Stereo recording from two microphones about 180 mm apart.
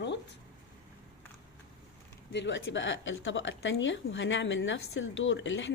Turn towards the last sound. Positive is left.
turn(degrees=90)